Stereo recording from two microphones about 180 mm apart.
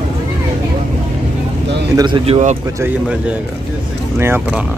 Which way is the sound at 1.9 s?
25° right (ahead or behind).